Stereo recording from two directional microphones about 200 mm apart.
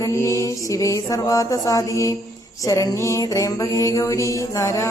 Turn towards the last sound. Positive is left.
turn(degrees=15)  # may be behind; listen again after turning